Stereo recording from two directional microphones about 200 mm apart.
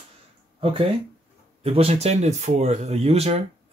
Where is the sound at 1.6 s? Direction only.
30° right (ahead or behind).